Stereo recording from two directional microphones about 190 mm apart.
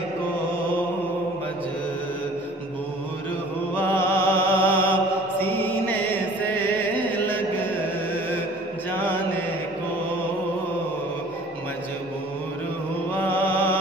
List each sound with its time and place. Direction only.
3.7 s mantra: 10° left (ahead or behind)
5.4 s chant: 10° left (ahead or behind)
7.6 s music: 10° left (ahead or behind)
13.1 s music: 10° left (ahead or behind)